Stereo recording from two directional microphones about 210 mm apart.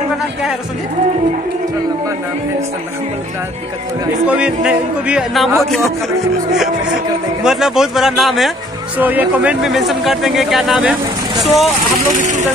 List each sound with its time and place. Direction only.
4.3 s speech: 5° right (ahead or behind)
7.4 s speech: centre (ahead or behind)
12.2 s speech: 35° right (ahead or behind)